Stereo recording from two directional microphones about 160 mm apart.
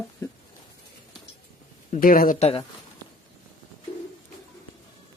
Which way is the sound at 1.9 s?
65° left (ahead or behind).